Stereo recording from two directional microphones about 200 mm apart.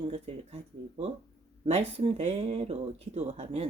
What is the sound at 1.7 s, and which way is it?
Speech, 30° right (ahead or behind).